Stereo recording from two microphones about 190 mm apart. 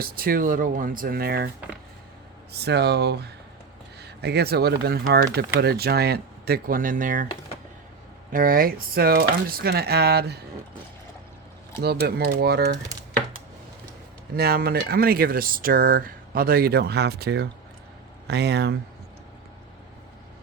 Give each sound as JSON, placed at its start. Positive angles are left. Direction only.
{"t": 0.0, "sound": "speech", "side_deg": -50}
{"t": 2.5, "sound": "speech", "side_deg": -60}
{"t": 8.3, "sound": "speech", "side_deg": -45}
{"t": 11.8, "sound": "speech", "side_deg": -55}
{"t": 14.3, "sound": "speech", "side_deg": -55}